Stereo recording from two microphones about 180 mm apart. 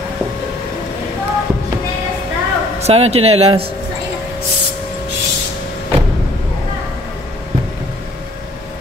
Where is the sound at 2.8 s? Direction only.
35° right (ahead or behind).